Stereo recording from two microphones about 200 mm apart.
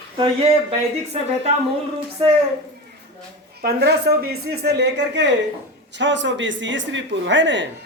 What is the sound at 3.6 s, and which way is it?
A woman's voice, 55° right (ahead or behind).